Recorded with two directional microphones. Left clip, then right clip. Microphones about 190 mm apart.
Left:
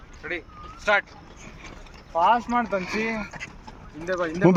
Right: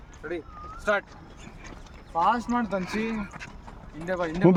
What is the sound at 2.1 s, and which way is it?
Speech, 75° right (ahead or behind).